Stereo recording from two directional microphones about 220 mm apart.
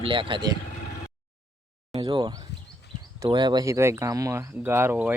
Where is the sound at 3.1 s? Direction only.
20° right (ahead or behind).